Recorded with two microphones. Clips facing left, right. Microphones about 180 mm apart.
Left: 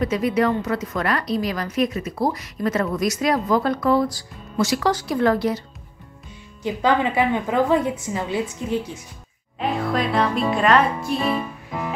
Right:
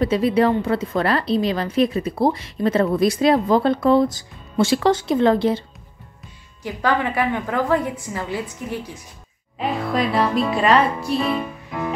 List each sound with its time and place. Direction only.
0.0 s a woman's voice: 30° right (ahead or behind)
6.6 s a woman's voice: 20° left (ahead or behind)
9.6 s music: centre (ahead or behind)